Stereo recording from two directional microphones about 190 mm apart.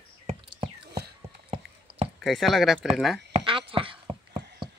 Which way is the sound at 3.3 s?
25° right (ahead or behind).